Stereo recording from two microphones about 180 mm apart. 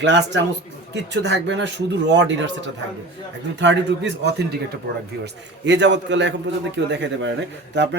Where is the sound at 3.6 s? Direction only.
75° right (ahead or behind).